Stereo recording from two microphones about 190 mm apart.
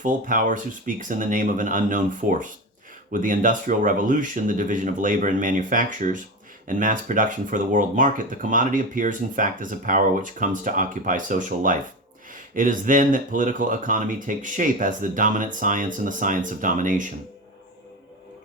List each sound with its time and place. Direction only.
0.0 s speech: 45° right (ahead or behind)